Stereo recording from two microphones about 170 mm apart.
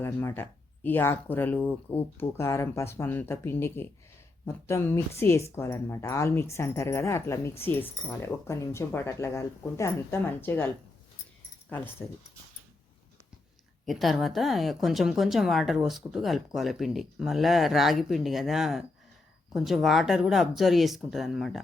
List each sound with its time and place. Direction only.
0.0 s speech: 15° left (ahead or behind)
12.0 s speech: 10° left (ahead or behind)
13.8 s a woman's voice: centre (ahead or behind)